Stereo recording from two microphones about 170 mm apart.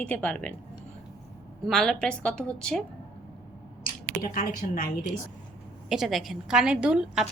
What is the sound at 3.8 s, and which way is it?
Speech, 55° left (ahead or behind).